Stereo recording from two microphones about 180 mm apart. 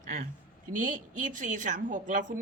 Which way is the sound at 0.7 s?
45° right (ahead or behind).